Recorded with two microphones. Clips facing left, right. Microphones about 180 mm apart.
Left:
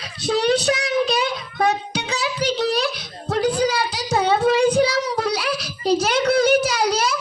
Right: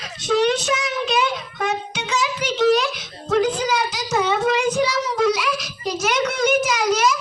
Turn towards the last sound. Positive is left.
turn(degrees=35)  # may be behind; listen again after turning